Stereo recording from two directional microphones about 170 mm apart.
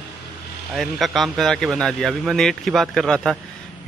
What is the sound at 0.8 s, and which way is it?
Speech, centre (ahead or behind).